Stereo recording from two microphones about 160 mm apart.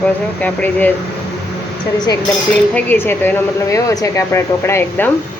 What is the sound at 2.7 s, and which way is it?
A woman's voice, 10° left (ahead or behind).